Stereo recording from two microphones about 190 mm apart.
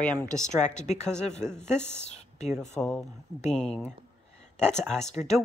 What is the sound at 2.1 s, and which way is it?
Whispering, 35° left (ahead or behind).